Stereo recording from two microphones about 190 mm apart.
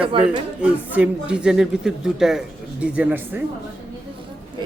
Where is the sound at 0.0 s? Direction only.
30° right (ahead or behind).